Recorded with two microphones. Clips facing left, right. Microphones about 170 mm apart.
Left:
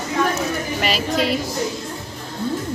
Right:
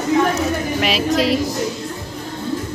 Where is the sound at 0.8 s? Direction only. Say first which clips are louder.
Right 3 dB; centre (ahead or behind).